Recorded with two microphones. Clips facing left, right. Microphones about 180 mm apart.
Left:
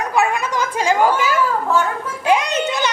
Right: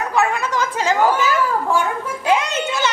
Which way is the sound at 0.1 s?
15° left (ahead or behind).